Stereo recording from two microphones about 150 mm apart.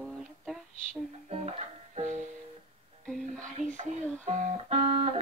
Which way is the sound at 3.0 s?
Centre (ahead or behind).